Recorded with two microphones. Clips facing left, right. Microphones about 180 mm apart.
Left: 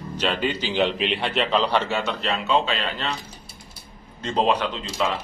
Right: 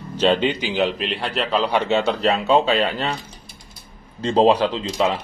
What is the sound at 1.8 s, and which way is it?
Speech, 25° right (ahead or behind).